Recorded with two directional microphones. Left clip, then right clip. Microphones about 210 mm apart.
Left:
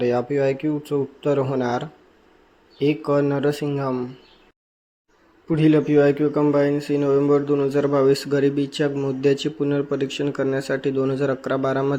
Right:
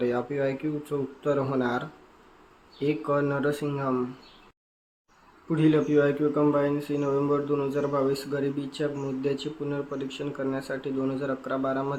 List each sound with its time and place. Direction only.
0.0 s speech: 25° left (ahead or behind)
5.5 s speech: 25° left (ahead or behind)